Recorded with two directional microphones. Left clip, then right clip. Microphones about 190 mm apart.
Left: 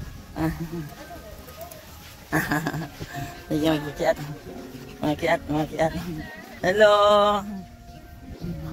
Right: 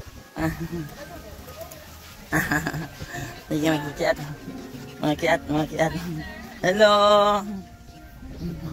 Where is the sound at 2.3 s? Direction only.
20° left (ahead or behind).